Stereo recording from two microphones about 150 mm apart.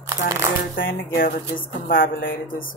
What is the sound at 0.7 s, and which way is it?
Speech, 75° left (ahead or behind).